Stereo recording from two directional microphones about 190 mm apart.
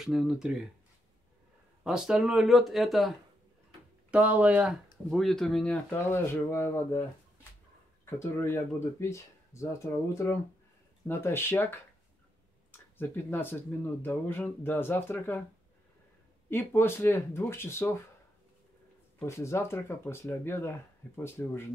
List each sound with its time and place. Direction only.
0.0 s speech: 5° right (ahead or behind)
1.8 s speech: 5° right (ahead or behind); by 7.0 s 15° left (ahead or behind)
8.0 s speech: 15° left (ahead or behind)
11.1 s speech: 10° left (ahead or behind)
12.9 s speech: 10° left (ahead or behind)
16.4 s speech: 10° left (ahead or behind)
19.1 s speech: 15° left (ahead or behind)